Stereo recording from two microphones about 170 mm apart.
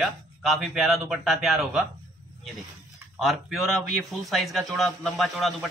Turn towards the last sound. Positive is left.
turn(degrees=0)  # may be behind; listen again after turning